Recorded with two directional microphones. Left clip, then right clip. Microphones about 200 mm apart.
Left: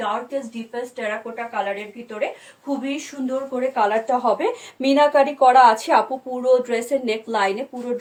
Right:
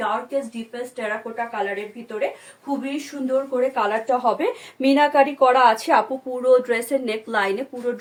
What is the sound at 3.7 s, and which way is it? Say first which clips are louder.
Speech: left 2 dB; 25° right (ahead or behind).